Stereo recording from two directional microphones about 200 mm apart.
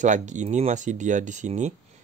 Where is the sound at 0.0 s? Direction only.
35° right (ahead or behind).